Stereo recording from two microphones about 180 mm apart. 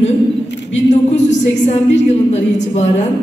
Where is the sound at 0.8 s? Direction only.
40° left (ahead or behind).